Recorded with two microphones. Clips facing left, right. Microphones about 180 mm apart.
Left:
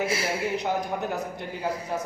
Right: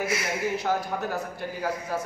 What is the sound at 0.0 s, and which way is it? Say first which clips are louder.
Speech: left 1 dB; 30° left (ahead or behind).